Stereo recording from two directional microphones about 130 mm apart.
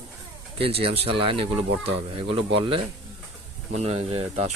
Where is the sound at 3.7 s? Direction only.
55° right (ahead or behind).